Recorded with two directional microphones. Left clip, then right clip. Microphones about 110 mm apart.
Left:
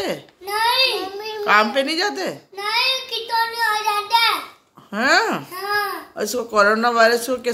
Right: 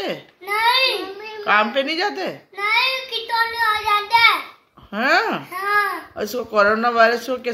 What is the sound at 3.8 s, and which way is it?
Child singing, 20° left (ahead or behind).